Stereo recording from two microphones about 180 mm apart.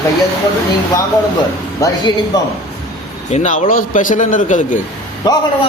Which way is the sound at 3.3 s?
45° left (ahead or behind).